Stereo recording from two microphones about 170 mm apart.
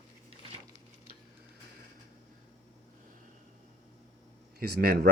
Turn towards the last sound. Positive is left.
turn(degrees=-65)  # may be behind; listen again after turning